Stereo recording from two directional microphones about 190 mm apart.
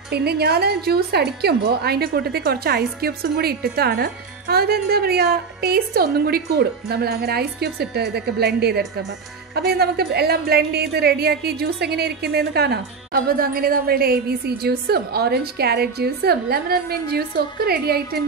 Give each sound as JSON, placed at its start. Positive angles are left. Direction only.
{"t": 0.1, "sound": "a woman's voice", "side_deg": -55}